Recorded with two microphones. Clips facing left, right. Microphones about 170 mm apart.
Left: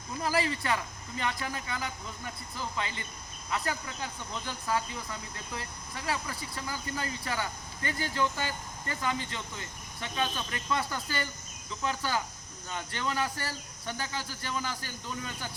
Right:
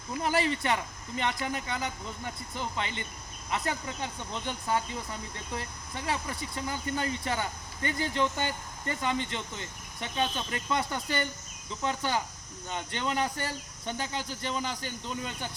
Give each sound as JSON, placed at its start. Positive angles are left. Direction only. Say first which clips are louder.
{"t": 0.2, "sound": "speech", "louder": "right 2 dB", "side_deg": -25}